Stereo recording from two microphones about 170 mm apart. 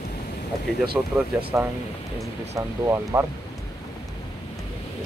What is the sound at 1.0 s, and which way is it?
Speech, 5° right (ahead or behind).